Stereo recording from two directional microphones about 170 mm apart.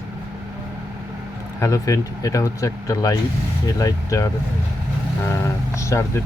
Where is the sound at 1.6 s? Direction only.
20° left (ahead or behind).